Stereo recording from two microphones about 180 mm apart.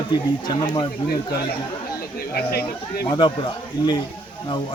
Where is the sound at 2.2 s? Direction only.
60° left (ahead or behind).